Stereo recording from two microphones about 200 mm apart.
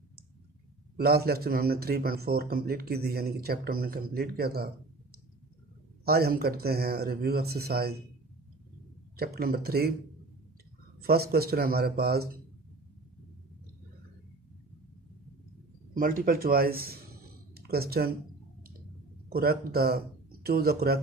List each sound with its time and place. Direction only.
0.9 s speech: 50° right (ahead or behind)
6.0 s speech: 50° right (ahead or behind)
9.1 s speech: 50° right (ahead or behind)
11.0 s speech: 50° right (ahead or behind)
15.9 s speech: 45° right (ahead or behind)
19.2 s speech: 50° right (ahead or behind)